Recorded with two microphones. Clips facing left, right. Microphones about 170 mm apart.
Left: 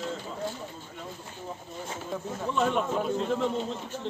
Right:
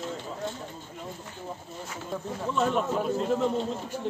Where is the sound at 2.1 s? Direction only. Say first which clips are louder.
Right 1 dB; centre (ahead or behind).